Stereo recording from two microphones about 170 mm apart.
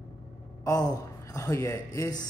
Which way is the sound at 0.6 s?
20° left (ahead or behind).